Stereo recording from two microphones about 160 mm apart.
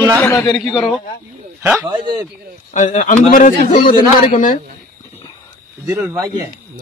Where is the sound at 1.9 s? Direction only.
30° right (ahead or behind).